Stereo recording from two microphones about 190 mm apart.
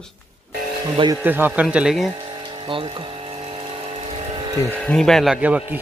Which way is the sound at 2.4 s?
25° right (ahead or behind).